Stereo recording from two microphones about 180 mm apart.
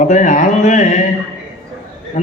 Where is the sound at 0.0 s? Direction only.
45° left (ahead or behind).